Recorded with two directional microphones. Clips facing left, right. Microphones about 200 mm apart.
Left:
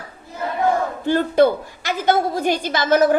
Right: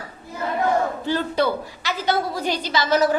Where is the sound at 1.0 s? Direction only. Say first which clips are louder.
Left 6 dB; 50° left (ahead or behind).